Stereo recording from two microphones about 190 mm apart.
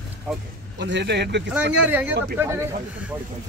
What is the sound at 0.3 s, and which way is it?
Speech, 5° right (ahead or behind).